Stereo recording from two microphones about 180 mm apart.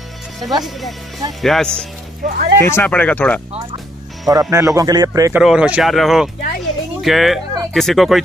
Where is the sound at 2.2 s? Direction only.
55° right (ahead or behind).